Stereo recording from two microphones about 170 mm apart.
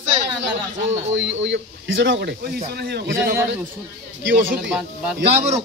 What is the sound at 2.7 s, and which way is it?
Speech, 70° right (ahead or behind).